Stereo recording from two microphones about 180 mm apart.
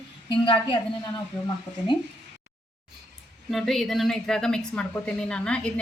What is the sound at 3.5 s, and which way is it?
A woman's voice, centre (ahead or behind).